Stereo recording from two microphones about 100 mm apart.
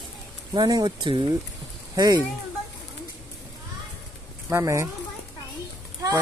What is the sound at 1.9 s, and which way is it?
Speech, 40° right (ahead or behind).